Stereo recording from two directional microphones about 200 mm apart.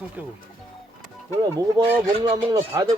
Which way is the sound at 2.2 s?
25° right (ahead or behind).